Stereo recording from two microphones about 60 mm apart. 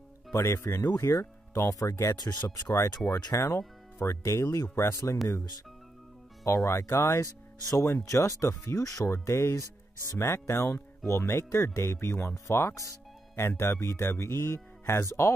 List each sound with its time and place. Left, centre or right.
0.3 s speech: left
1.7 s speech: left
3.5 s speech: left
4.2 s speech: left
4.9 s speech: left
6.4 s speech: left
7.6 s speech: left
9.2 s speech: left